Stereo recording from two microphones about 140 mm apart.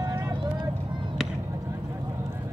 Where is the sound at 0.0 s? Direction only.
25° right (ahead or behind).